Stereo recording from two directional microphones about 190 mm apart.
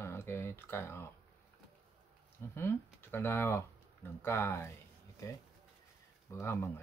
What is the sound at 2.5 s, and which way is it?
Speech, 10° left (ahead or behind).